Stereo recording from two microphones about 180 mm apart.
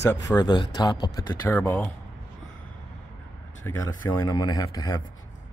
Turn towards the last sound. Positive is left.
turn(degrees=25)  # may be behind; listen again after turning